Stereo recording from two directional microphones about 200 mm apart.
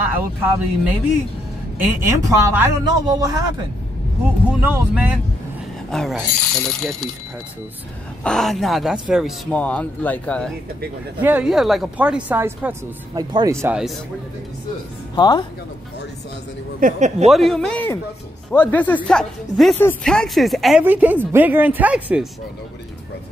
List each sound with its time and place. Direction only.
0.1 s speech: 10° right (ahead or behind)
4.5 s a man's voice: 10° right (ahead or behind)
8.2 s a man's voice: 5° left (ahead or behind)
11.1 s speech: 10° right (ahead or behind)
15.1 s speech: 20° left (ahead or behind)
16.8 s speech: 35° right (ahead or behind)
17.3 s a man's voice: centre (ahead or behind)